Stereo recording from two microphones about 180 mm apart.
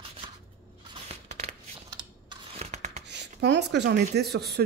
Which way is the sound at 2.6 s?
40° right (ahead or behind).